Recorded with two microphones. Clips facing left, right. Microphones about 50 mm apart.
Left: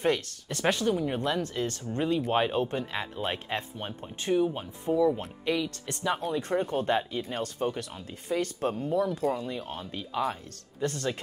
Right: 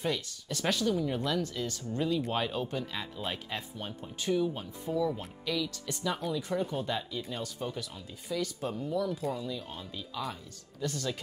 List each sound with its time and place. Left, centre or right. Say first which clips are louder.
0.0 s speech: left 6 dB; left
5.4 s speech: left 2 dB; left